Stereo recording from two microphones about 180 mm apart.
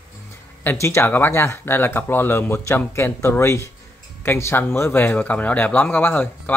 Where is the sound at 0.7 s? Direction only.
15° left (ahead or behind).